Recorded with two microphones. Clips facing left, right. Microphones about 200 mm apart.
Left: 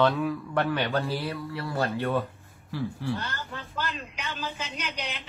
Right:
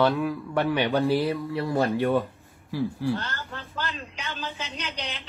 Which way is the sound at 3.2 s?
15° left (ahead or behind).